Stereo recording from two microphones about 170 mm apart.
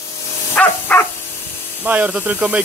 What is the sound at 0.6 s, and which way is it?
Dog, 10° left (ahead or behind).